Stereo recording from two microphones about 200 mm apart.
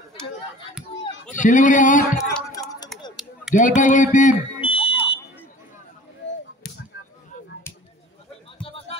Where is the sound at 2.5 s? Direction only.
20° left (ahead or behind).